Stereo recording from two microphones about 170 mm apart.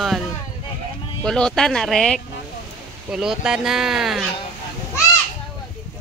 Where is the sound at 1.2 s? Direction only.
5° left (ahead or behind).